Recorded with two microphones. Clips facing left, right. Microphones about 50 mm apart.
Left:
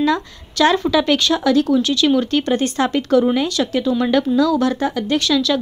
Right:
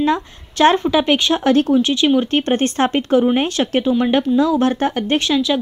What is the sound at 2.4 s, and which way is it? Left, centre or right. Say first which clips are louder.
Speech: right 1 dB; right.